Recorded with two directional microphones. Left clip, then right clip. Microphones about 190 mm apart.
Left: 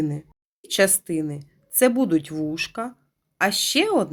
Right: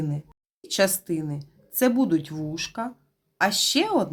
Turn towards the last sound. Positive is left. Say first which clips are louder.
# left 2 dB
turn(degrees=20)  # may be behind; listen again after turning